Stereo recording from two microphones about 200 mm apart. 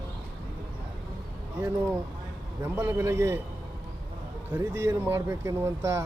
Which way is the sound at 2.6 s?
10° right (ahead or behind).